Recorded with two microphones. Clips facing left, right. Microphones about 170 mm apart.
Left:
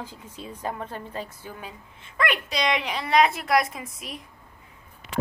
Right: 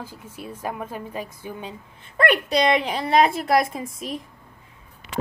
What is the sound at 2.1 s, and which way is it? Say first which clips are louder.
Speech: right 7 dB; 60° right (ahead or behind).